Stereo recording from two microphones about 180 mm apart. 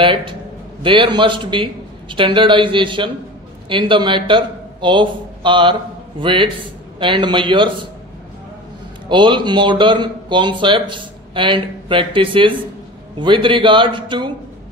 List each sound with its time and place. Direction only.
0.0 s a man's voice: 30° right (ahead or behind)
9.1 s speech: 25° right (ahead or behind)